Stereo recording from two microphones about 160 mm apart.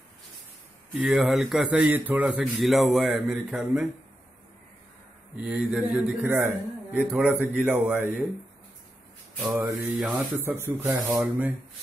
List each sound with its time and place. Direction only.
0.9 s a man's voice: 5° right (ahead or behind)
5.3 s a man's voice: 5° right (ahead or behind)
9.4 s speech: 15° right (ahead or behind)